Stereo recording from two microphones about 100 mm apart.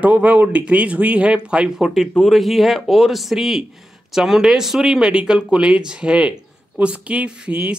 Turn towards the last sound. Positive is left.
turn(degrees=-10)  # may be behind; listen again after turning